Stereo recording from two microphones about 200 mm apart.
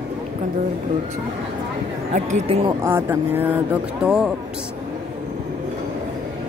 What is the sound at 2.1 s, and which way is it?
Speech, 35° right (ahead or behind).